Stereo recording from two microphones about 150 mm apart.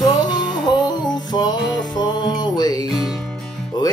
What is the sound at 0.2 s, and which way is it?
Music, 30° left (ahead or behind).